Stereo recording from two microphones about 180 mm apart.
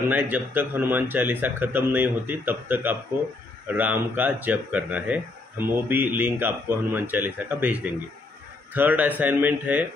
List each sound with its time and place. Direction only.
0.1 s speech: 10° right (ahead or behind)